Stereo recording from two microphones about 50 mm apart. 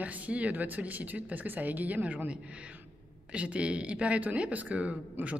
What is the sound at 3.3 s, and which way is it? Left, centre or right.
Speech, right.